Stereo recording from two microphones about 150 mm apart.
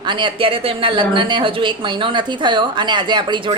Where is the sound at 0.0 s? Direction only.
30° right (ahead or behind).